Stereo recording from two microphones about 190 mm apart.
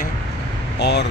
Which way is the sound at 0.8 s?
65° left (ahead or behind).